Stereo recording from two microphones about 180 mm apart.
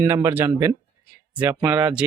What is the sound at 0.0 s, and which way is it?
Speech, 15° right (ahead or behind).